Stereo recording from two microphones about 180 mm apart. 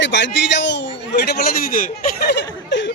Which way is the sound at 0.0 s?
85° left.